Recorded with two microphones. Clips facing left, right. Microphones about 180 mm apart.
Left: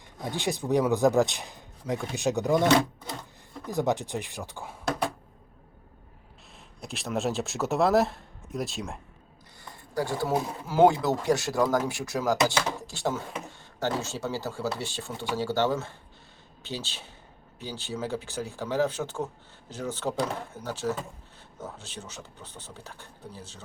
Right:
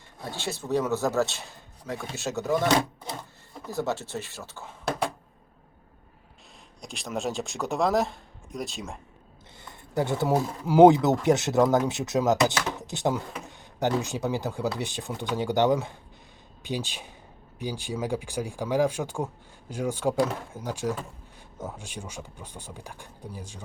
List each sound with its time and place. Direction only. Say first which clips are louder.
0.2 s speech: left 4 dB; 15° left (ahead or behind)
3.7 s speech: left 3 dB; 15° left (ahead or behind)
6.8 s speech: left 2 dB; centre (ahead or behind)
9.9 s speech: right 3 dB; 20° right (ahead or behind)